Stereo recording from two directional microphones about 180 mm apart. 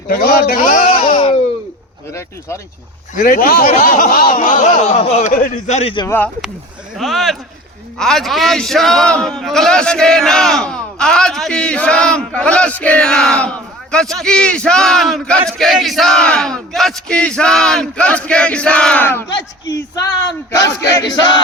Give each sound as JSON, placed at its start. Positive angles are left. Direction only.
{"t": 0.1, "sound": "a man's voice", "side_deg": 55}
{"t": 0.9, "sound": "a sound", "side_deg": 30}
{"t": 3.2, "sound": "a man's voice", "side_deg": 50}
{"t": 6.1, "sound": "a man's voice", "side_deg": 10}
{"t": 19.6, "sound": "speech", "side_deg": 20}